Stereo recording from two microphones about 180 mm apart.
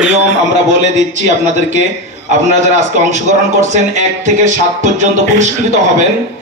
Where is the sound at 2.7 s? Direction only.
40° right (ahead or behind).